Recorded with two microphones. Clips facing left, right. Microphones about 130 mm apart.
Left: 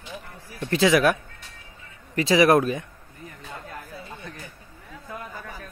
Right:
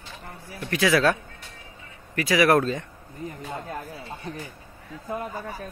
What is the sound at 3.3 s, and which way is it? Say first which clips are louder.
Speech: right 5 dB; 30° right (ahead or behind).